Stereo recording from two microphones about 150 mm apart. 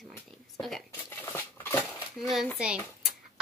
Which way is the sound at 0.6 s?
Centre (ahead or behind).